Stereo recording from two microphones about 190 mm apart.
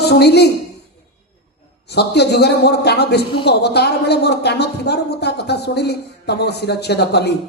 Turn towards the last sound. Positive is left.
turn(degrees=60)  # may be behind; listen again after turning